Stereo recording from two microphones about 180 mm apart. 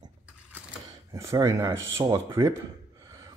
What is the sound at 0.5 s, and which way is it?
Camera, 15° right (ahead or behind).